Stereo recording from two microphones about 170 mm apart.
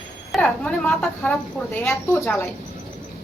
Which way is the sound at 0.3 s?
5° left (ahead or behind).